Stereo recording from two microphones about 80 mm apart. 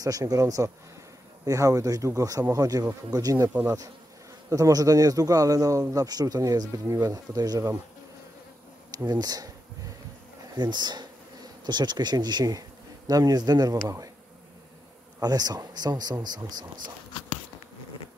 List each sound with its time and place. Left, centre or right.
0.0 s a man's voice: right
8.9 s a man's voice: right
10.6 s speech: right
15.1 s speech: right